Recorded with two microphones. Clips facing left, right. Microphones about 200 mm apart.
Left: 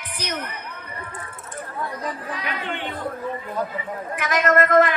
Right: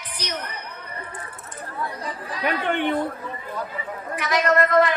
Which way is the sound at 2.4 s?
55° right (ahead or behind).